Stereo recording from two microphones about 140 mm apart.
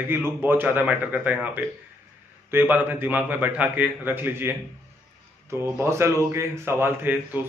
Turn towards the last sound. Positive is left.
turn(degrees=-15)  # may be behind; listen again after turning